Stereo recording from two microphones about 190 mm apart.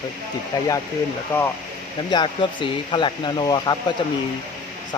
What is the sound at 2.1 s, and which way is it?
Speech, 25° left (ahead or behind).